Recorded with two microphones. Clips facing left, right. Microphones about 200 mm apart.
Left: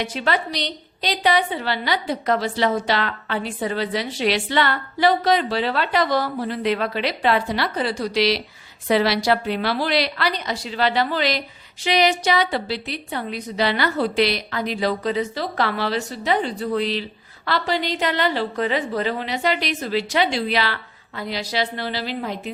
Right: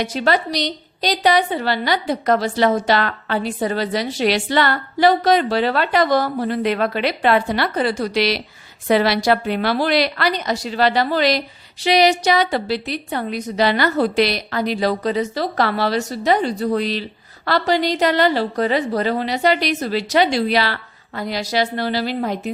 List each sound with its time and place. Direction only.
0.0 s a woman's voice: 40° right (ahead or behind)